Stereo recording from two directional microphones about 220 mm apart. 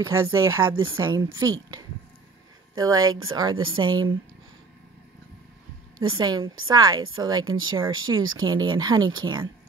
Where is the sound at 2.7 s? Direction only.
15° right (ahead or behind).